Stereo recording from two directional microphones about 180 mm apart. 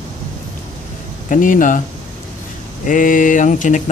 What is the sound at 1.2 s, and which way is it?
Speech, 45° left (ahead or behind).